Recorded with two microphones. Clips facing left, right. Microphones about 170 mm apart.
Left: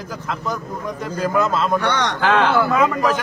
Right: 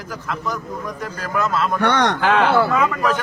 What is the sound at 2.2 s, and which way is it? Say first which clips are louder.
Speech: left 2 dB; 5° right (ahead or behind).